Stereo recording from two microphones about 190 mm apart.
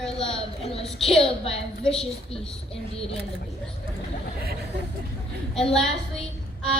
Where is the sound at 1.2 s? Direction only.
30° left (ahead or behind).